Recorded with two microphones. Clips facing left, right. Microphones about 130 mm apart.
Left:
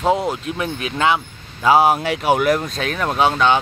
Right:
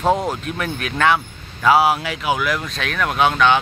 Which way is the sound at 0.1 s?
15° left (ahead or behind).